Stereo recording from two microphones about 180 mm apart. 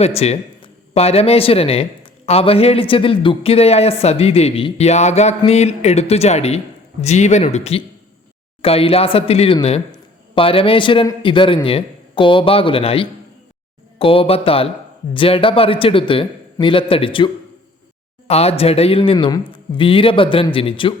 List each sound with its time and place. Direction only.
0.0 s speech: 35° left (ahead or behind)